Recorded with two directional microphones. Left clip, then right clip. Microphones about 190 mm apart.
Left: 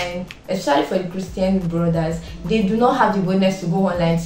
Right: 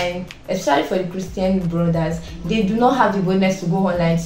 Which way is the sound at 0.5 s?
5° right (ahead or behind).